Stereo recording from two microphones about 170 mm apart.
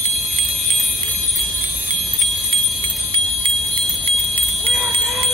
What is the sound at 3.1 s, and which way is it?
Jingle bell, 35° right (ahead or behind).